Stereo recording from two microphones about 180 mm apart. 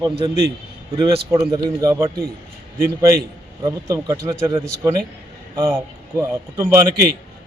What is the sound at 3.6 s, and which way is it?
Speech, 15° right (ahead or behind).